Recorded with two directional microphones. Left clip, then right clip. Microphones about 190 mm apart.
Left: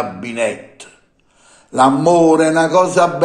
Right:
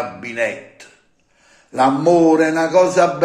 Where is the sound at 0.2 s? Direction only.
25° left (ahead or behind).